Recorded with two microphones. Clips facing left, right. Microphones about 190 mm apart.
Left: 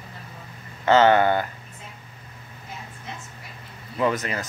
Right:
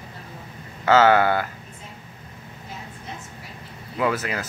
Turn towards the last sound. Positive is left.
turn(degrees=-5)  # may be behind; listen again after turning